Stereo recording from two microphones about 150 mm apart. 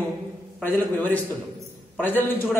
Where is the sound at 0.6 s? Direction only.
15° left (ahead or behind).